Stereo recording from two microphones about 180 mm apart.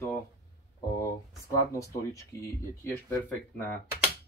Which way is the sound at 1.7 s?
15° left (ahead or behind).